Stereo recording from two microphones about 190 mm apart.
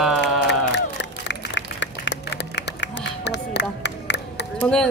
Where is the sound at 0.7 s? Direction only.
65° left (ahead or behind).